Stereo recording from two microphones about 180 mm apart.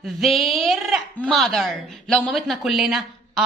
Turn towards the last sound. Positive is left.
turn(degrees=0)  # may be behind; listen again after turning